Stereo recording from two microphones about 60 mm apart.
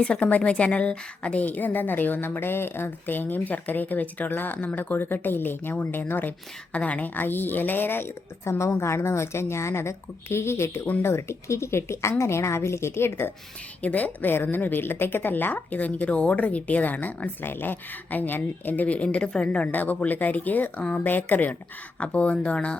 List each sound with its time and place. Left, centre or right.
0.0 s a woman's voice: left
6.7 s a woman's voice: left
13.8 s a woman's voice: left
19.7 s a woman's voice: left
21.9 s a woman's voice: left